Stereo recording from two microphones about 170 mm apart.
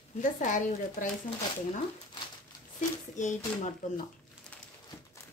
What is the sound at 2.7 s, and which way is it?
Speech, 45° left (ahead or behind).